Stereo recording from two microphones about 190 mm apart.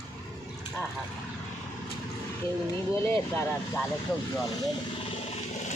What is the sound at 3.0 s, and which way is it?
Speech, 10° left (ahead or behind).